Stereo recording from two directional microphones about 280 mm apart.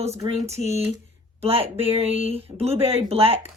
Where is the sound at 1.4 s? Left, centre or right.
Right.